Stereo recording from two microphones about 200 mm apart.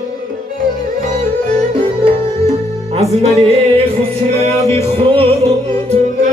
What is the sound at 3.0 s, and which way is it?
Music, 30° right (ahead or behind).